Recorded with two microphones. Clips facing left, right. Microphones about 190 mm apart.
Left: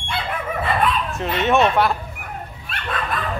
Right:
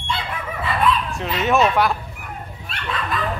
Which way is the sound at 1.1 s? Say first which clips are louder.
Left 4 dB; centre (ahead or behind).